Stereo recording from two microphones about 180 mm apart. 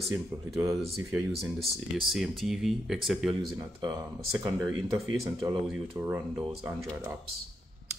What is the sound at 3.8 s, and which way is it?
Speech, 20° right (ahead or behind).